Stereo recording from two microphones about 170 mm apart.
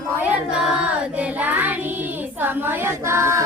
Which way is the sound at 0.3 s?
5° right (ahead or behind).